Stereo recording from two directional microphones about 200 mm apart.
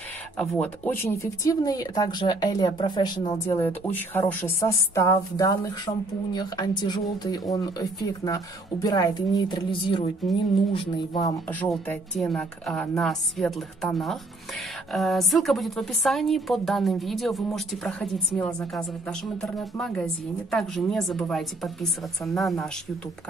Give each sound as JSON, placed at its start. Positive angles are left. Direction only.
{"t": 0.4, "sound": "a woman's voice", "side_deg": 5}
{"t": 11.4, "sound": "a woman's voice", "side_deg": 10}